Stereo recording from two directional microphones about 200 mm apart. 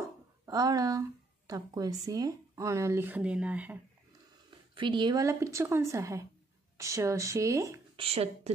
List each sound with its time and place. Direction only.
0.5 s speech: 20° right (ahead or behind)
4.7 s speech: 25° right (ahead or behind)
8.0 s speech: 30° right (ahead or behind)